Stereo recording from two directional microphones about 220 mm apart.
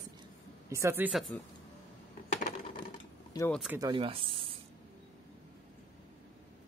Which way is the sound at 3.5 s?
Centre (ahead or behind).